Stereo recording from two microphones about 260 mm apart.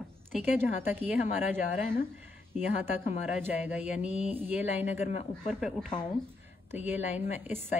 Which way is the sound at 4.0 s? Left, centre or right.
Left.